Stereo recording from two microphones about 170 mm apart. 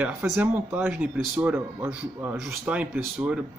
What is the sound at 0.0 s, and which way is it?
Speech, 10° right (ahead or behind).